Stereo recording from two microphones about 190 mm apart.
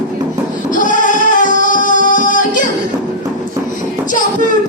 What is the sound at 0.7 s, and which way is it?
Music, 45° left (ahead or behind).